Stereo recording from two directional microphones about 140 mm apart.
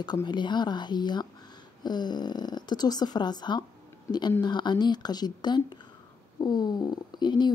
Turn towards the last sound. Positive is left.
turn(degrees=30)  # may be behind; listen again after turning